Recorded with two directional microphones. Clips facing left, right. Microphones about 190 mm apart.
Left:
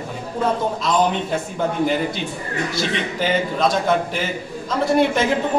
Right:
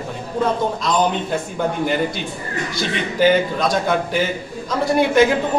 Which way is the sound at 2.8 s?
Centre (ahead or behind).